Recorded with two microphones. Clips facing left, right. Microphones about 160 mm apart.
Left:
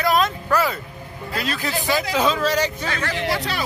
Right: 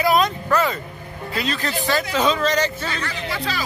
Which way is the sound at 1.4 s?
5° left (ahead or behind).